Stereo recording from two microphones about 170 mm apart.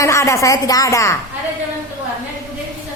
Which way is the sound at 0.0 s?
15° left (ahead or behind).